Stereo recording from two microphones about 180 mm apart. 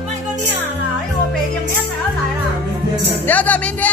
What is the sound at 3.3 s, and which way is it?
Music, 10° left (ahead or behind).